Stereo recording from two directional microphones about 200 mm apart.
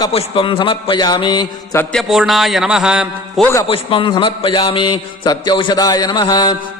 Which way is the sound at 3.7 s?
25° left (ahead or behind).